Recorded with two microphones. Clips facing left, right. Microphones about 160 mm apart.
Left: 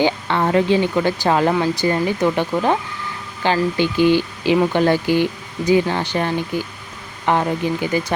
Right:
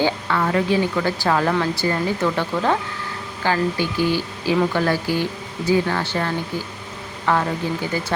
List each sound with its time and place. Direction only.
0.0 s speech: 25° left (ahead or behind)